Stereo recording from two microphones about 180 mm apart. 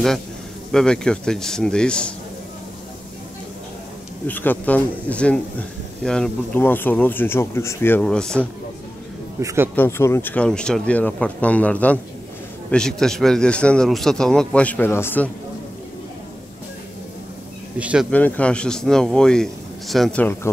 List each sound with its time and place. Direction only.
0.7 s a man's voice: 5° left (ahead or behind)
4.3 s speech: 10° left (ahead or behind)
9.4 s speech: 15° right (ahead or behind)
9.8 s a man's voice: 15° left (ahead or behind)
17.7 s speech: 5° right (ahead or behind)
18.1 s a man's voice: 10° left (ahead or behind)